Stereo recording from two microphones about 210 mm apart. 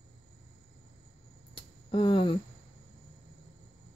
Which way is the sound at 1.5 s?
25° left (ahead or behind).